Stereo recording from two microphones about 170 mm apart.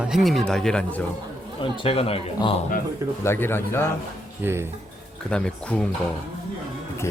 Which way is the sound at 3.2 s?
15° left (ahead or behind).